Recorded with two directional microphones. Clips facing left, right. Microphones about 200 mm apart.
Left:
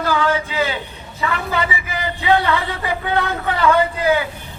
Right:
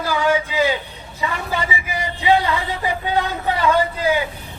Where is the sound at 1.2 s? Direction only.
15° right (ahead or behind).